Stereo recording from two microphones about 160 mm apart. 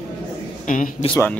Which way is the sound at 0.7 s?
50° left (ahead or behind).